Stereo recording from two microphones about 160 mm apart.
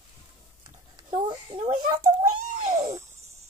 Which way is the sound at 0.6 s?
30° right (ahead or behind).